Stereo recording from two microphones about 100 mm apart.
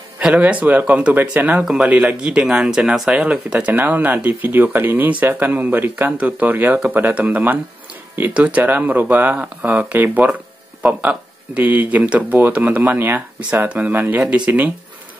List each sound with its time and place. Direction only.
0.2 s speech: 15° right (ahead or behind)